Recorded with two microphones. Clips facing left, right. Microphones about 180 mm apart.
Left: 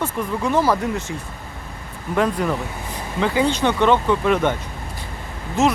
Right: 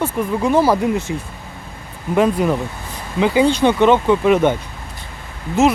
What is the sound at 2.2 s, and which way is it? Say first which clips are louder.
Speech: right 5 dB; 15° right (ahead or behind).